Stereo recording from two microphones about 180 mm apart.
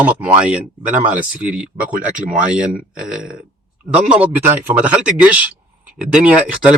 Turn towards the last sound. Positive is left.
turn(degrees=-5)  # may be behind; listen again after turning